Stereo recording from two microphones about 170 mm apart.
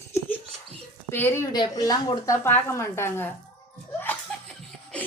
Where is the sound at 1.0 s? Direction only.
15° left (ahead or behind).